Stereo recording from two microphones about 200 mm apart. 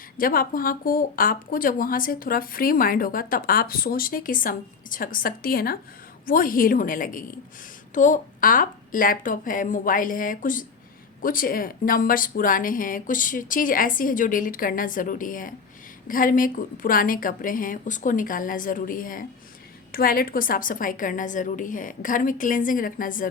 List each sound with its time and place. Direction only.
0.2 s speech: 45° left (ahead or behind)